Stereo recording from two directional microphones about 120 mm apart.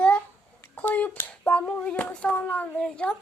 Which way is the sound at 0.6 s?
15° left (ahead or behind).